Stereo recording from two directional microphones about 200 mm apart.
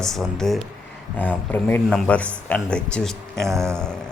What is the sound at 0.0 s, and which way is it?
A man's voice, centre (ahead or behind).